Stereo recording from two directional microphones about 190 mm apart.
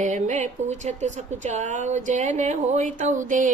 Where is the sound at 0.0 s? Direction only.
40° right (ahead or behind).